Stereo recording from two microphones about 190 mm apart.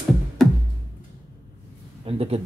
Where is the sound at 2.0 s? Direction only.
30° right (ahead or behind).